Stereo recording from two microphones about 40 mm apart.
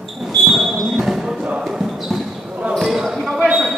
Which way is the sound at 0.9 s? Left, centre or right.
Centre.